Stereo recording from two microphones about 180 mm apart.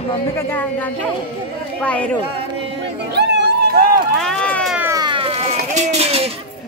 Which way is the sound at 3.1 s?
60° right (ahead or behind).